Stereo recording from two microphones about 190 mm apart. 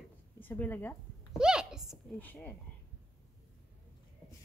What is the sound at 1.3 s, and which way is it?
Speech, 5° right (ahead or behind).